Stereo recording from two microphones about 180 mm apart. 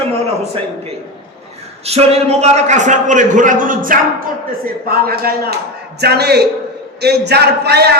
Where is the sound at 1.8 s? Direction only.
35° right (ahead or behind).